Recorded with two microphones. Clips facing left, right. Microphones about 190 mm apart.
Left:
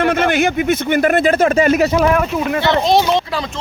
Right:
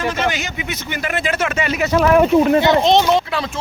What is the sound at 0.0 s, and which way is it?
Speech, 60° left (ahead or behind).